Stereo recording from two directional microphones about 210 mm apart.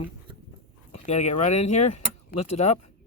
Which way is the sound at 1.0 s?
35° left (ahead or behind).